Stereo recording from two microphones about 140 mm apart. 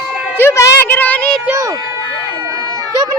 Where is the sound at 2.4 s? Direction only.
25° right (ahead or behind).